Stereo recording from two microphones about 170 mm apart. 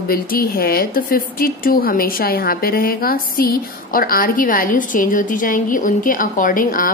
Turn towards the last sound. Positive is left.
turn(degrees=55)  # may be behind; listen again after turning